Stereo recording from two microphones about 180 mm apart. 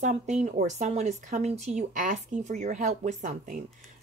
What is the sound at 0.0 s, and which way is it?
Speech, 40° right (ahead or behind).